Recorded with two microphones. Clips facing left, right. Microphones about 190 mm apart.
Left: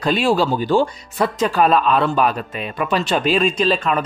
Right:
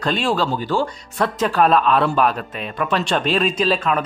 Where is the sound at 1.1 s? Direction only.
5° left (ahead or behind).